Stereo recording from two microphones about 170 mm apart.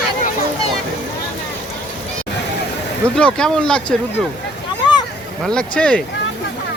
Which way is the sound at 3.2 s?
5° left (ahead or behind).